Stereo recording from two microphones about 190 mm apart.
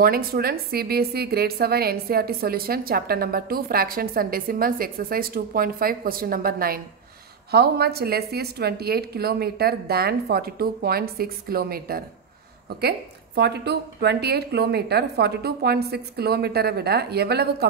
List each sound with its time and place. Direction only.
0.0 s a woman's voice: 50° right (ahead or behind)